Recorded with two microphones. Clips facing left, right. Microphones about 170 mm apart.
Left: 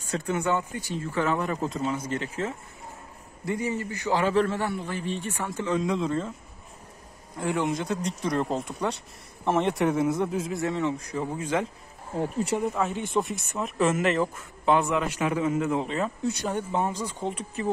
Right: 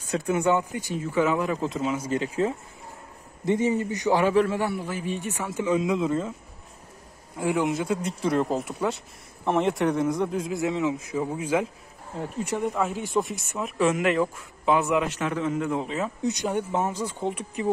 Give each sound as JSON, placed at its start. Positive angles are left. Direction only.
{"t": 0.3, "sound": "a man's voice", "side_deg": -15}
{"t": 7.3, "sound": "a man's voice", "side_deg": -10}
{"t": 12.2, "sound": "speech", "side_deg": 20}
{"t": 12.6, "sound": "a man's voice", "side_deg": 0}
{"t": 15.0, "sound": "a man's voice", "side_deg": 10}
{"t": 16.3, "sound": "a man's voice", "side_deg": -15}